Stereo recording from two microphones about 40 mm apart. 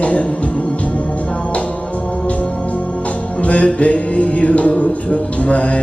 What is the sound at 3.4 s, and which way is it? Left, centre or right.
Music, left.